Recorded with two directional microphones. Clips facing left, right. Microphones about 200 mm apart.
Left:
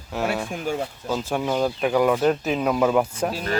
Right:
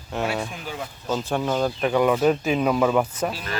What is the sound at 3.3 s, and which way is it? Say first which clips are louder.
Speech: left 5 dB; 40° left (ahead or behind).